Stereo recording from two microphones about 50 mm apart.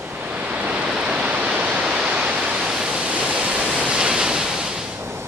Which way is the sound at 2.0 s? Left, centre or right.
Right.